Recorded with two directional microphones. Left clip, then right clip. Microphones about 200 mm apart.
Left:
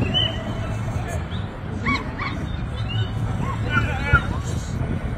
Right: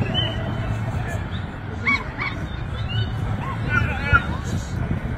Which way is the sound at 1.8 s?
20° left (ahead or behind).